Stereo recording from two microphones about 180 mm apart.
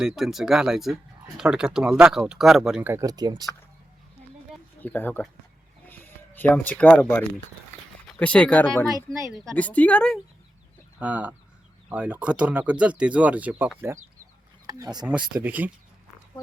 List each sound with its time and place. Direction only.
0.0 s speech: centre (ahead or behind); by 3.4 s 20° right (ahead or behind)
4.8 s a woman's voice: 10° left (ahead or behind)
9.0 s speech: 20° right (ahead or behind)
9.3 s a woman's voice: 5° left (ahead or behind)
11.0 s speech: 10° right (ahead or behind)
15.3 s speech: 10° right (ahead or behind)